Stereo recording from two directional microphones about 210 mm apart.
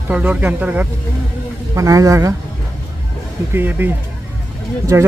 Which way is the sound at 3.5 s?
10° right (ahead or behind).